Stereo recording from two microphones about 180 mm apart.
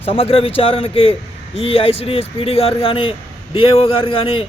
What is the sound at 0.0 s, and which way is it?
Speech, 35° left (ahead or behind).